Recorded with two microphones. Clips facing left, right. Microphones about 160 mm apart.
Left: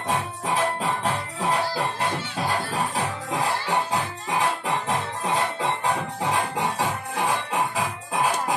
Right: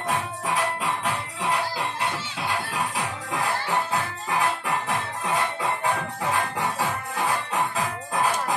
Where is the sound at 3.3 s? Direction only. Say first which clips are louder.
Left 1 dB; 20° left (ahead or behind).